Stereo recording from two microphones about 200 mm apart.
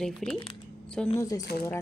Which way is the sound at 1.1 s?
15° left (ahead or behind).